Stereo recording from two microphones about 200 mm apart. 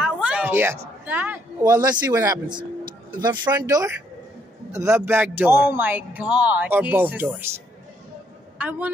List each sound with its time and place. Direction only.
0.0 s a sound: 5° right (ahead or behind)
1.6 s a man's voice: 20° right (ahead or behind)
8.5 s speech: 10° right (ahead or behind)